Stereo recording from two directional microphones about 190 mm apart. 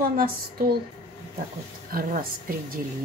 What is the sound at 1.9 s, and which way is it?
Speech, 50° right (ahead or behind).